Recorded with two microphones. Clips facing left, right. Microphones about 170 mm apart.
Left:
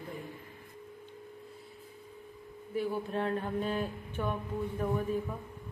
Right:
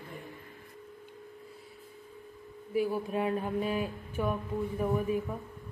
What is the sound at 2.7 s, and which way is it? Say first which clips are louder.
Speech: right 3 dB; 10° right (ahead or behind).